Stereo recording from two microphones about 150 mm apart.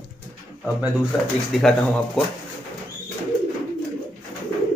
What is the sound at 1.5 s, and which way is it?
Speech, centre (ahead or behind).